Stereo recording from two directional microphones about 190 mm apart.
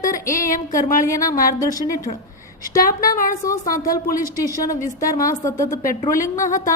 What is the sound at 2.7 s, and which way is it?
Speech, 45° left (ahead or behind).